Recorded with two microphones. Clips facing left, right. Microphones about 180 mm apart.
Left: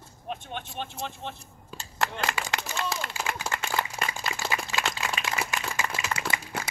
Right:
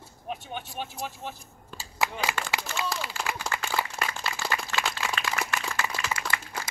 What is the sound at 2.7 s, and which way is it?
Run, centre (ahead or behind).